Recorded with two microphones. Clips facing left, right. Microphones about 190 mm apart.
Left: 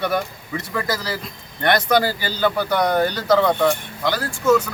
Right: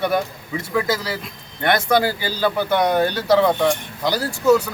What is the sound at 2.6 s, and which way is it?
Speech, 25° right (ahead or behind).